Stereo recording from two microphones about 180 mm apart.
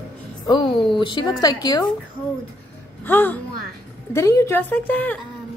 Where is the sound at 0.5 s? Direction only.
25° left (ahead or behind).